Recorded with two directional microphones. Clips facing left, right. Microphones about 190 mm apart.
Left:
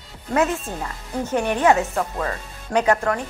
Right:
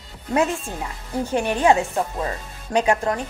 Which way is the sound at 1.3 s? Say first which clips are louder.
Even; 20° right (ahead or behind).